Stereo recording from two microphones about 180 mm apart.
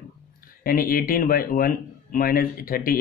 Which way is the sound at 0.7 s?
55° left (ahead or behind).